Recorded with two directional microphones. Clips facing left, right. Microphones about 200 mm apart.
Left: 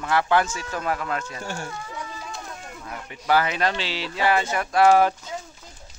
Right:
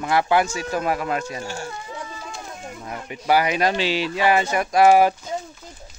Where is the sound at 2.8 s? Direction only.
15° right (ahead or behind).